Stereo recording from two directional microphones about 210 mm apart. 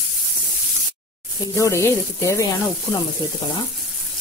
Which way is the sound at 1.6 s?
15° left (ahead or behind).